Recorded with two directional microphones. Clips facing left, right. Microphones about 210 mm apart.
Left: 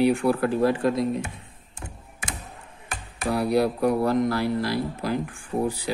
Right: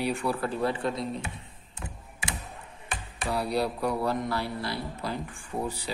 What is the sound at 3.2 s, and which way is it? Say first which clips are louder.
Speech: left 6 dB; 55° left (ahead or behind).